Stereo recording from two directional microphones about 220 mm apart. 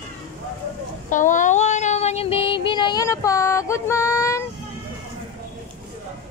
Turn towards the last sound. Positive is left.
turn(degrees=10)  # may be behind; listen again after turning